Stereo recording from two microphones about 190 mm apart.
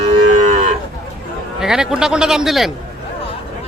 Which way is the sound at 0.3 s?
40° right (ahead or behind).